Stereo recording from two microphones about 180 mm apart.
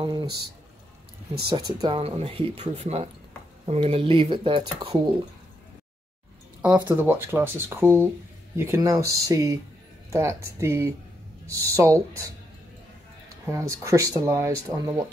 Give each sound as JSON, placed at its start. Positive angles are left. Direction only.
{"t": 0.0, "sound": "speech", "side_deg": -25}
{"t": 1.5, "sound": "speech", "side_deg": -25}
{"t": 6.6, "sound": "speech", "side_deg": -10}
{"t": 13.5, "sound": "speech", "side_deg": -15}